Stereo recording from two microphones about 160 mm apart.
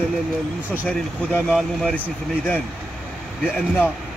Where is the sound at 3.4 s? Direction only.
Centre (ahead or behind).